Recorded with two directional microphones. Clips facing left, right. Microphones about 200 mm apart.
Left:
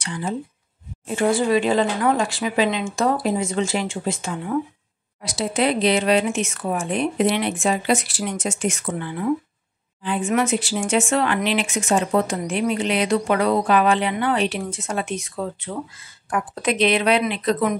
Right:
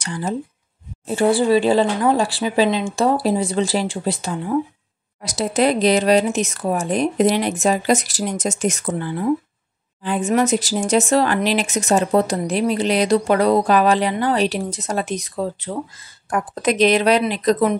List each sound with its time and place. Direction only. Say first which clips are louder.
0.0 s speech: right 2 dB; 40° right (ahead or behind)